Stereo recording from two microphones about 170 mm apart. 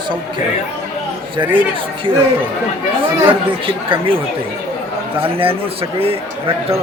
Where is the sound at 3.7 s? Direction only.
30° right (ahead or behind).